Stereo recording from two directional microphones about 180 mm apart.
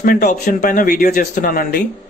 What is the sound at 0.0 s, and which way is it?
Speech, 50° left (ahead or behind).